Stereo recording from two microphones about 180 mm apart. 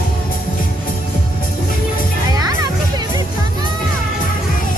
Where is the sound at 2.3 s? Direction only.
20° right (ahead or behind).